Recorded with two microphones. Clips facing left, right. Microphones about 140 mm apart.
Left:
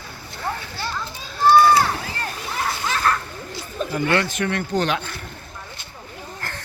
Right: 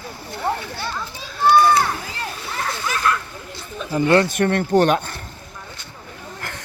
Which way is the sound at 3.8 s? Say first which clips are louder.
Left 3 dB; 40° left (ahead or behind).